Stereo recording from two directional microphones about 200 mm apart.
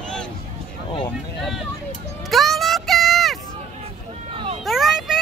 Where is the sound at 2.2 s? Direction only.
Centre (ahead or behind).